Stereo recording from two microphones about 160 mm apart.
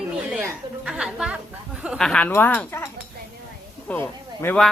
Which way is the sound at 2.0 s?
5° left (ahead or behind).